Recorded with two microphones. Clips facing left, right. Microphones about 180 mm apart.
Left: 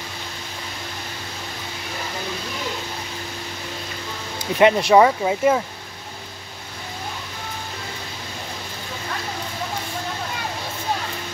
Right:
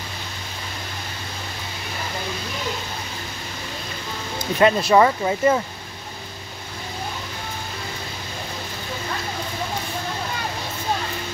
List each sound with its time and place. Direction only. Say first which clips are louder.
4.6 s speech: left 2 dB; 15° left (ahead or behind)